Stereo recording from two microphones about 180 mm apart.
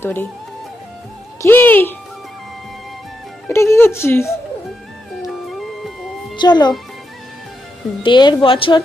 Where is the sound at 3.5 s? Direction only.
15° left (ahead or behind).